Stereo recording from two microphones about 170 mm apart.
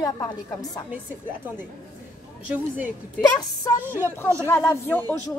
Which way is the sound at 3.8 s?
10° right (ahead or behind).